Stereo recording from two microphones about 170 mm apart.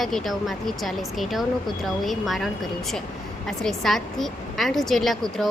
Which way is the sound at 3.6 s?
Centre (ahead or behind).